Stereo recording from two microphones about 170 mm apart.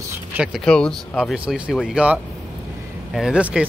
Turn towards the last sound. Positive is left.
turn(degrees=-5)  # may be behind; listen again after turning